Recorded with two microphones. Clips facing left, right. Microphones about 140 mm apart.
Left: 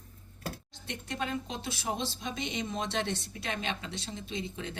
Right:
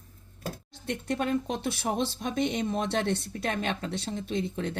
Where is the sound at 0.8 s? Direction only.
55° right (ahead or behind).